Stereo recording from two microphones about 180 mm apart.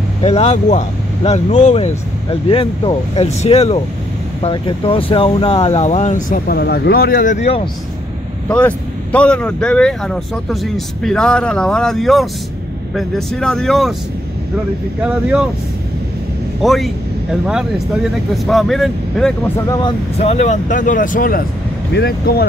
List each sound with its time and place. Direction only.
0.2 s speech: 35° left (ahead or behind)
8.5 s speech: 5° left (ahead or behind)
15.0 s speech: 5° right (ahead or behind)
16.6 s speech: centre (ahead or behind)
20.2 s speech: 35° left (ahead or behind); by 22.5 s 60° left (ahead or behind)